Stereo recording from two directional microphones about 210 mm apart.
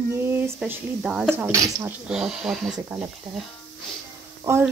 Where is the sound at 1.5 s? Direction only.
15° right (ahead or behind).